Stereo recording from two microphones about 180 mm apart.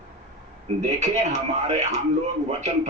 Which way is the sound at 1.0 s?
40° right (ahead or behind).